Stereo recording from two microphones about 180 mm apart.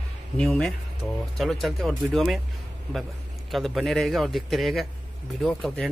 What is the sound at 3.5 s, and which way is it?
Speech, centre (ahead or behind).